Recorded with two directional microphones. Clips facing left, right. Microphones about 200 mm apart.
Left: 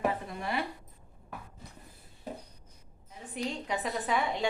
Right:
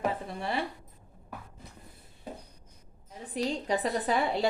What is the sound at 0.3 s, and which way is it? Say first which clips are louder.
Speech: right 1 dB; 30° right (ahead or behind).